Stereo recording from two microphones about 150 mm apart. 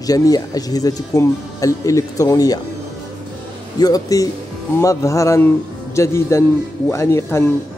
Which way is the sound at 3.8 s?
25° left (ahead or behind).